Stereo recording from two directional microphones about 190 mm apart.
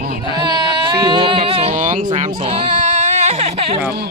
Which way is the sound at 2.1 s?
30° right (ahead or behind).